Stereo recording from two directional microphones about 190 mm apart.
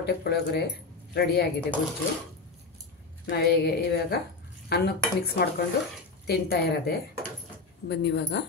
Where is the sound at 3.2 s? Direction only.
60° left (ahead or behind).